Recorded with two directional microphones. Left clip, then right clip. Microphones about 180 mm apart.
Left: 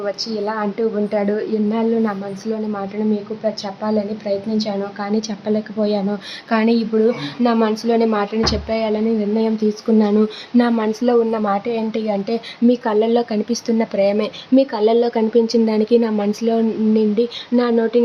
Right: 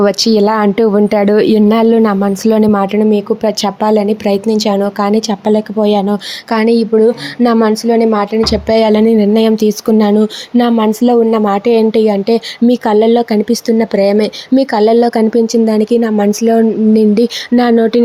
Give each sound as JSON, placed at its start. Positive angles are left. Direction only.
{"t": 0.0, "sound": "a woman's voice", "side_deg": -50}